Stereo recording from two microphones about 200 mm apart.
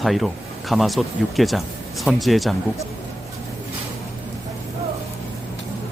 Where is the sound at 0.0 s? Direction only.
Centre (ahead or behind).